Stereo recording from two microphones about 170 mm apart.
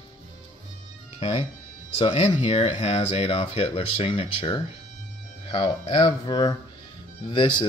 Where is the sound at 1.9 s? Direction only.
35° left (ahead or behind).